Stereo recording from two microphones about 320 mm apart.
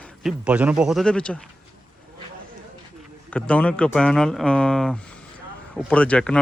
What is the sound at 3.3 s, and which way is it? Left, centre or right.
Speech, centre.